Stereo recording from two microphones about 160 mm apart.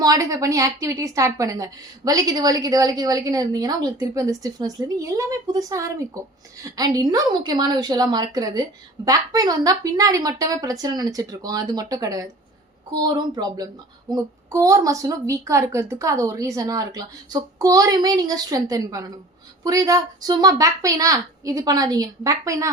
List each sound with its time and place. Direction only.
0.0 s a woman's voice: 25° right (ahead or behind)